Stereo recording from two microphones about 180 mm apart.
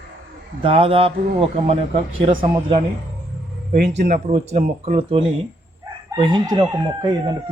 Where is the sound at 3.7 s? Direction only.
65° right (ahead or behind).